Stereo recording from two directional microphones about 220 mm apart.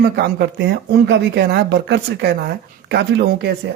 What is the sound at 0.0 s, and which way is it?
Speech, 45° right (ahead or behind).